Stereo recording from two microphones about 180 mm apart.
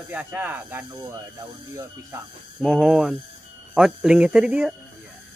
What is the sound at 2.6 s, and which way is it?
Speech, 5° right (ahead or behind).